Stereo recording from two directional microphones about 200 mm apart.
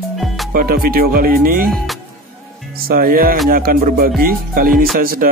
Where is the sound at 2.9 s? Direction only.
45° right (ahead or behind).